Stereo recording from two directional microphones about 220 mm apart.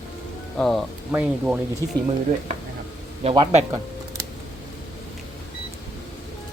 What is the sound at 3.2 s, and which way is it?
Speech, 20° right (ahead or behind).